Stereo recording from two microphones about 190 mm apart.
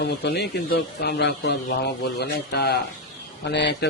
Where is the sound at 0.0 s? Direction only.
55° left (ahead or behind).